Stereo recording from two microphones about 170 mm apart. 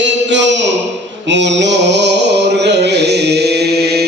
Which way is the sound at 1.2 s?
90° right.